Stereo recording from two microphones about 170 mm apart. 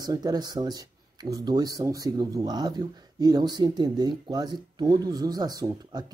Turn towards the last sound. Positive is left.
turn(degrees=-25)  # may be behind; listen again after turning